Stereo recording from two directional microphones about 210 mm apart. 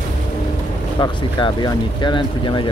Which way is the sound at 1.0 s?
20° left (ahead or behind).